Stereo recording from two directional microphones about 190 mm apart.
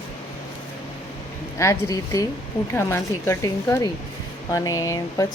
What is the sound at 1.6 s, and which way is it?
A woman's voice, 15° left (ahead or behind).